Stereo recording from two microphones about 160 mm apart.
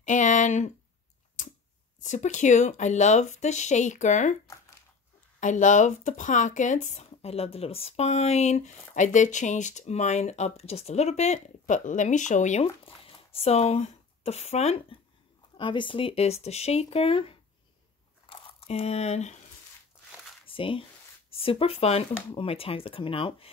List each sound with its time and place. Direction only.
0.0 s a sound: 50° left (ahead or behind)
1.4 s scissors: 55° left (ahead or behind)
2.0 s speech: 50° left (ahead or behind)
5.4 s speech: 50° left (ahead or behind)
15.5 s speech: 30° left (ahead or behind)
20.4 s speech: 35° left (ahead or behind)